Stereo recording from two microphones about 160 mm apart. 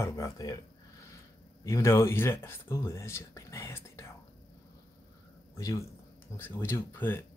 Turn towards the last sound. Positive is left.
turn(degrees=15)  # may be behind; listen again after turning